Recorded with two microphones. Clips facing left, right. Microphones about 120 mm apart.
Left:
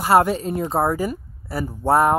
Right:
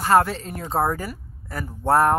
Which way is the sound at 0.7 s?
Centre (ahead or behind).